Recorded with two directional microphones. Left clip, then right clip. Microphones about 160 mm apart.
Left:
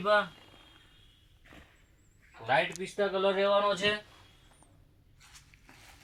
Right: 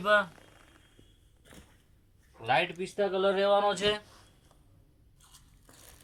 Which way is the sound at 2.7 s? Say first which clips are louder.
Right 1 dB; 15° right (ahead or behind).